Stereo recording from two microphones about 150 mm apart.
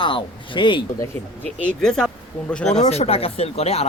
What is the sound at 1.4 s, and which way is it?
Speech, 10° left (ahead or behind).